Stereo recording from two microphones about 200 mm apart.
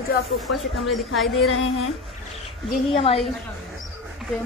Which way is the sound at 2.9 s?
30° left (ahead or behind).